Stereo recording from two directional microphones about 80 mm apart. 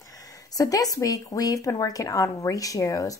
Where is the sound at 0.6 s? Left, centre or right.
Left.